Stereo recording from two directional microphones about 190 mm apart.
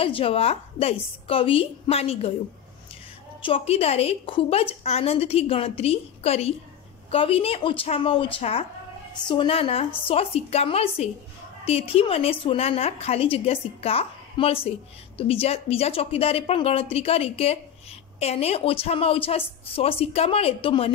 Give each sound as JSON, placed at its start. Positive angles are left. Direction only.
{"t": 0.0, "sound": "a woman's voice", "side_deg": 30}
{"t": 3.4, "sound": "a woman's voice", "side_deg": 30}